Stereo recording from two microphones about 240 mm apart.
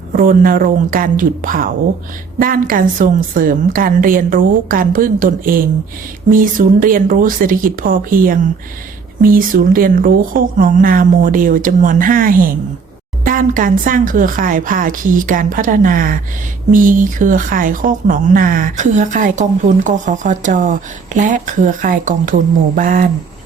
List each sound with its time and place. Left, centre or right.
0.1 s speech: right